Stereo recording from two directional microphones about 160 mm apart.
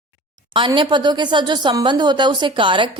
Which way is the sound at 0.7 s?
30° right (ahead or behind).